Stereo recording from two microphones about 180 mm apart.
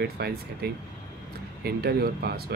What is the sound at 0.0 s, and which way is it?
Speech, 60° right (ahead or behind).